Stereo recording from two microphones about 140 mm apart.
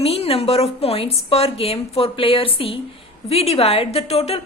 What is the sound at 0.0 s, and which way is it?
A woman's voice, 45° left (ahead or behind).